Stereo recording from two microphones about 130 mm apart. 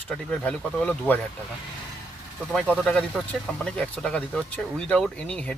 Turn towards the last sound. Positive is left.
turn(degrees=10)  # may be behind; listen again after turning